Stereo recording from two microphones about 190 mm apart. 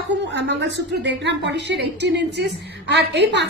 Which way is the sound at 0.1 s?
70° right (ahead or behind).